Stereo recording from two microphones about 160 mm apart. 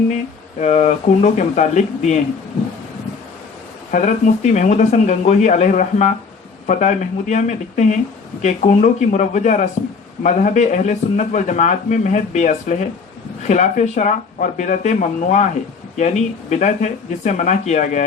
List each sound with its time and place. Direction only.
0.6 s a man's voice: 45° left (ahead or behind)
3.9 s a man's voice: 50° left (ahead or behind)